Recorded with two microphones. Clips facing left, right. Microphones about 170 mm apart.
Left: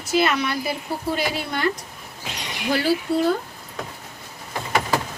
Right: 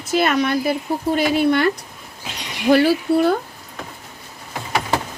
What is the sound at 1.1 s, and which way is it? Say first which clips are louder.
Speech: right 9 dB; 65° right (ahead or behind).